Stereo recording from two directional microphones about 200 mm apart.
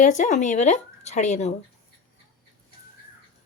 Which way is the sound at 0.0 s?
40° left (ahead or behind).